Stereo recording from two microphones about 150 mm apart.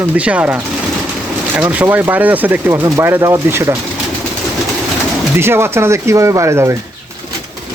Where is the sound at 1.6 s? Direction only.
10° right (ahead or behind).